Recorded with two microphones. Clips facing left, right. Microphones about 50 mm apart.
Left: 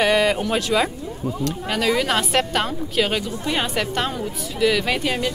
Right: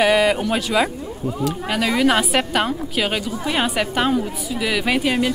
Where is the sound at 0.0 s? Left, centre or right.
Centre.